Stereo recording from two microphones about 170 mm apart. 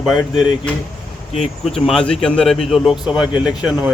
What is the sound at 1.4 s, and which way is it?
Speech, centre (ahead or behind).